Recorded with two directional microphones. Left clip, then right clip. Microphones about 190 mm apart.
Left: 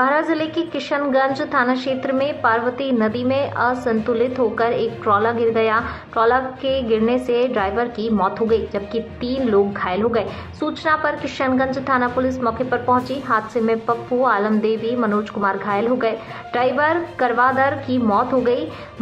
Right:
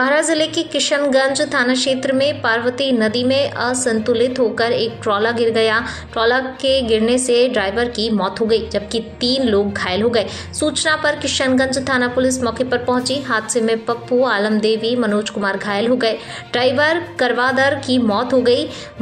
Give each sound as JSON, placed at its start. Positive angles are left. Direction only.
{"t": 0.0, "sound": "a woman's voice", "side_deg": -20}